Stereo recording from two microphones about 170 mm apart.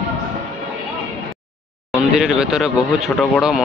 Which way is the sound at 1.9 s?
5° right (ahead or behind).